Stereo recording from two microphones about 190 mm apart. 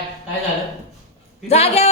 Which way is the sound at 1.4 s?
35° left (ahead or behind).